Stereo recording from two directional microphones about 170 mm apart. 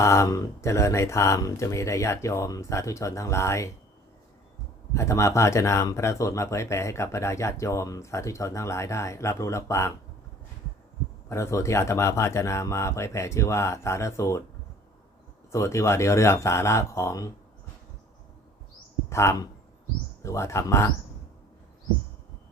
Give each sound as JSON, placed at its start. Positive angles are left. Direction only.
{"t": 0.0, "sound": "speech", "side_deg": 15}
{"t": 4.9, "sound": "speech", "side_deg": 15}
{"t": 11.3, "sound": "speech", "side_deg": 15}
{"t": 15.5, "sound": "speech", "side_deg": 15}
{"t": 19.1, "sound": "speech", "side_deg": 15}